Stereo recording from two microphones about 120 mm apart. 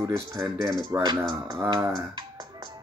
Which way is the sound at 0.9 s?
35° right (ahead or behind).